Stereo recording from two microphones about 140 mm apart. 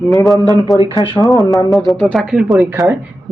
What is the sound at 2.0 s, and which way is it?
Speech, centre (ahead or behind).